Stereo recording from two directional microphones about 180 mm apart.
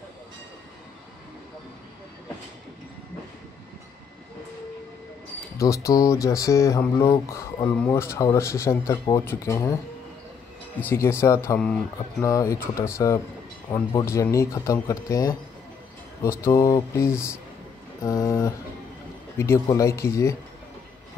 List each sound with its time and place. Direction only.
5.6 s speech: 15° left (ahead or behind)
10.8 s speech: 15° left (ahead or behind)